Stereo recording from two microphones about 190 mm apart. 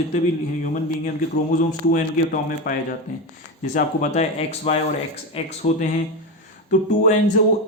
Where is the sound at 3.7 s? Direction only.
40° left (ahead or behind).